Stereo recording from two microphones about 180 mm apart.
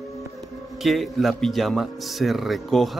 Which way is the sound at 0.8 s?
Centre (ahead or behind).